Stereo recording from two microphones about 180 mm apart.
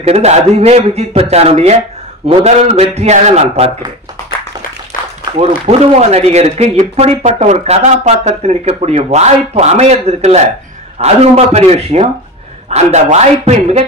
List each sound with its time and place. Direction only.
0.0 s speech: 35° right (ahead or behind)
5.7 s speech: 35° right (ahead or behind)